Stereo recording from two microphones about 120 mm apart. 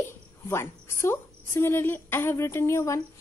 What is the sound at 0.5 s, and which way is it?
A woman's voice, 20° left (ahead or behind).